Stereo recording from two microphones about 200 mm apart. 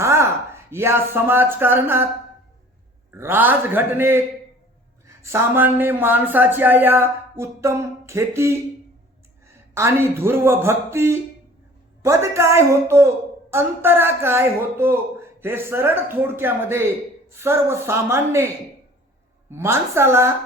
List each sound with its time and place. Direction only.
0.0 s speech: 15° right (ahead or behind)
3.1 s speech: 10° right (ahead or behind)
9.7 s speech: 15° right (ahead or behind)